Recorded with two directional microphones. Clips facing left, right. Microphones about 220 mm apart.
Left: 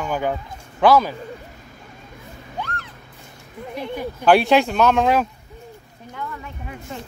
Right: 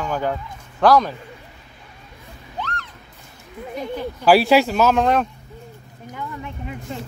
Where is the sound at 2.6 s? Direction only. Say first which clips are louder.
Right 1 dB; 5° left (ahead or behind).